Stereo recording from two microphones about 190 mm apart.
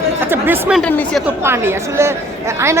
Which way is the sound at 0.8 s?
5° left (ahead or behind).